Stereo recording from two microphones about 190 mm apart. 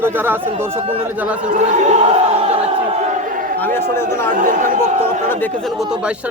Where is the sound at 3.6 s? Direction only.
10° left (ahead or behind).